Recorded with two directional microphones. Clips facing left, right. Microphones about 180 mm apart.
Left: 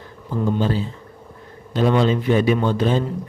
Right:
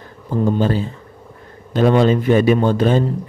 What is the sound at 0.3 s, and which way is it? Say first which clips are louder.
A man's voice: right 4 dB; 50° right (ahead or behind).